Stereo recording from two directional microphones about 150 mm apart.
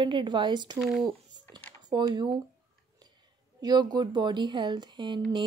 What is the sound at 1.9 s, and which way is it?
Speech, 30° right (ahead or behind).